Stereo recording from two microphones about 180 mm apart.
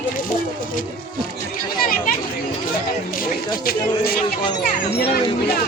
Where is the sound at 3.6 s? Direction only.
55° left (ahead or behind).